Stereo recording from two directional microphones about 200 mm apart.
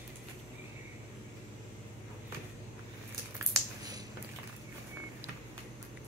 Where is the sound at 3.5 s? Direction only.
20° right (ahead or behind).